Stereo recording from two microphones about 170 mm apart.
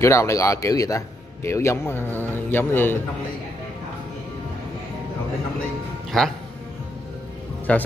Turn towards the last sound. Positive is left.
turn(degrees=10)  # may be behind; listen again after turning